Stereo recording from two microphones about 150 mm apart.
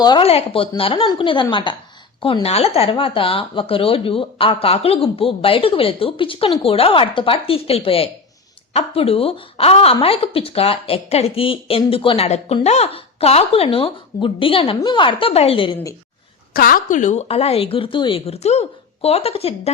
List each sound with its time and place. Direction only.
0.0 s speech: 30° left (ahead or behind)
0.3 s speech: 40° left (ahead or behind)
16.6 s speech: 70° left (ahead or behind); by 19.7 s 40° left (ahead or behind)